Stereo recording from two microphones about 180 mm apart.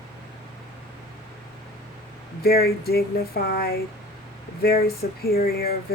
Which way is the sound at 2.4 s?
60° left (ahead or behind).